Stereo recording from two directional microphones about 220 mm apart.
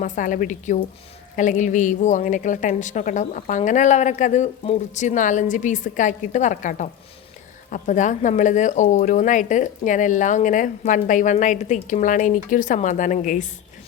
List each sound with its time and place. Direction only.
0.0 s speech: 35° left (ahead or behind)